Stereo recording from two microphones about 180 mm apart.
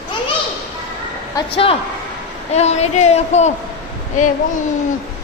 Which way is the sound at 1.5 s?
30° left (ahead or behind).